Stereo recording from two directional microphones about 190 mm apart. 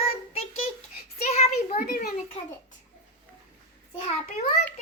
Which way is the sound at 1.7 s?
50° left (ahead or behind).